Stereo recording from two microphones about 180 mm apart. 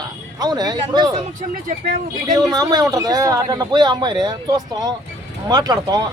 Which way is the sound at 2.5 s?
20° right (ahead or behind).